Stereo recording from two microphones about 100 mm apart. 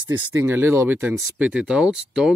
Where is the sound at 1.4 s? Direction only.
10° right (ahead or behind).